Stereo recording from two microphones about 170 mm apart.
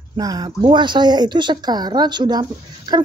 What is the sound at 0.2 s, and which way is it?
A woman's voice, 20° right (ahead or behind).